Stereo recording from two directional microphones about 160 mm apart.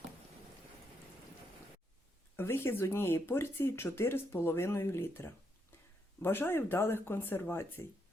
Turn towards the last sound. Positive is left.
turn(degrees=15)  # may be behind; listen again after turning